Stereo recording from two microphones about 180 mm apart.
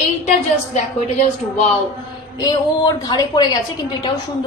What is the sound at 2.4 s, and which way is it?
Speech, 25° left (ahead or behind).